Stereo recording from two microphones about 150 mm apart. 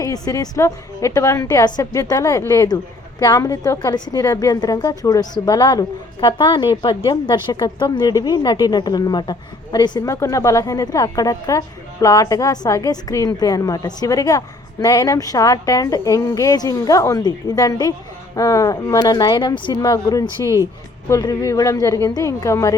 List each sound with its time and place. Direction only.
0.0 s a woman's voice: 20° left (ahead or behind)